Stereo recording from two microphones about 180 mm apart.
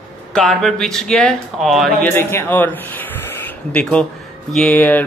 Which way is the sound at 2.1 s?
10° left (ahead or behind).